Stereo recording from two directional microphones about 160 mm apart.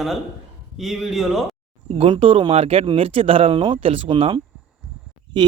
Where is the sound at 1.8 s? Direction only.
35° right (ahead or behind).